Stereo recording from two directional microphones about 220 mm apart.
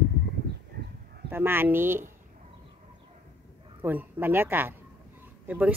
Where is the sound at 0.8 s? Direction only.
45° right (ahead or behind).